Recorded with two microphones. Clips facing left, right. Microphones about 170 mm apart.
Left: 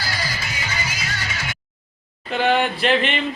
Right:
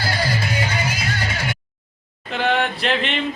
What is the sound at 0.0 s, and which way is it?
Music, 55° right (ahead or behind).